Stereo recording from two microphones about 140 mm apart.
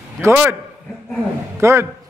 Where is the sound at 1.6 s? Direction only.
20° right (ahead or behind).